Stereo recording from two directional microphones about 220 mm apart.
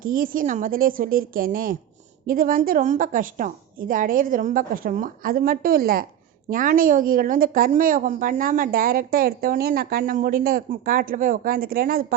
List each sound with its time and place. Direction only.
0.0 s a woman's voice: 40° right (ahead or behind)